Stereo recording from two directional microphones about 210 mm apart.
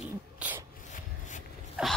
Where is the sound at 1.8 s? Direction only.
5° right (ahead or behind).